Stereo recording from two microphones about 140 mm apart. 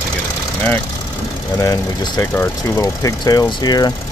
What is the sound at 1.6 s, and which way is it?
Speech, 25° left (ahead or behind).